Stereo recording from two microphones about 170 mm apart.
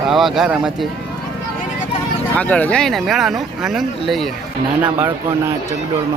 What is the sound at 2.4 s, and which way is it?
Speech, 10° left (ahead or behind).